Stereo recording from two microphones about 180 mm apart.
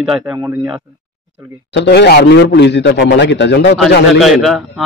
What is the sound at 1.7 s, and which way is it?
A man's voice, 65° left (ahead or behind).